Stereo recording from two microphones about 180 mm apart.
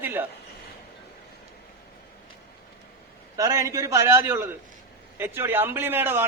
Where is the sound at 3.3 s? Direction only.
20° right (ahead or behind).